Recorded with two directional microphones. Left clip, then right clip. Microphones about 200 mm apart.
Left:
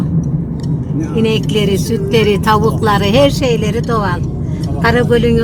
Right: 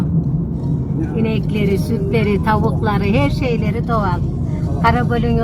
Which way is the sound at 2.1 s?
15° left (ahead or behind).